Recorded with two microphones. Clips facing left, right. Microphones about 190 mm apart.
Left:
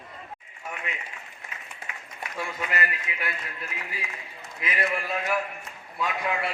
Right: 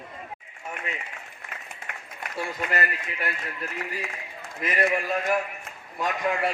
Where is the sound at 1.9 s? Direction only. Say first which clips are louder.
Right 2 dB; 55° right (ahead or behind).